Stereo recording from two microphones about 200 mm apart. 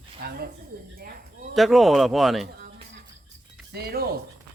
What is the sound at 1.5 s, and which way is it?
Speech, centre (ahead or behind).